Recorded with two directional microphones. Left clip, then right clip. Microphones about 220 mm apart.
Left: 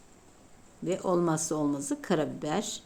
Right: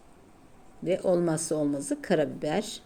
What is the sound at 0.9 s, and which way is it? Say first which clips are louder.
Speech: right 3 dB; 5° left (ahead or behind).